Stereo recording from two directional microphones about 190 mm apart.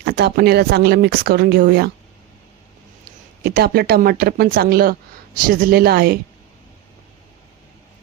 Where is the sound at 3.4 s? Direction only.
55° right (ahead or behind).